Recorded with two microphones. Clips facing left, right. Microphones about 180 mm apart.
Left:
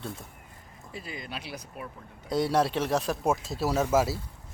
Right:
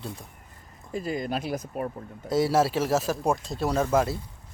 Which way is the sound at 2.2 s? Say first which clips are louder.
Right 3 dB; 5° right (ahead or behind).